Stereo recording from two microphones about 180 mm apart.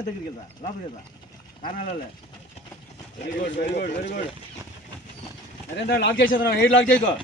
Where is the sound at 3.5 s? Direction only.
45° left (ahead or behind).